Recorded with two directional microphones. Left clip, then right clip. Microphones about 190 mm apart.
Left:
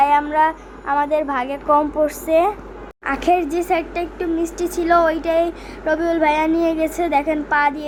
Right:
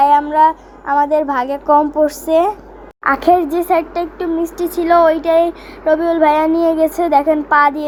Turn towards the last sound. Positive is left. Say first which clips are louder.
# right 6 dB
turn(degrees=-20)  # may be behind; listen again after turning